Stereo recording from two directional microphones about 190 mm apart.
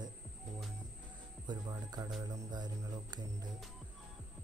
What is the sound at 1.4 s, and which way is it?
Speech, 20° right (ahead or behind).